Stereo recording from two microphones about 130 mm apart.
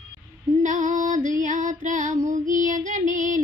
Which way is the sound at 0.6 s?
75° right (ahead or behind).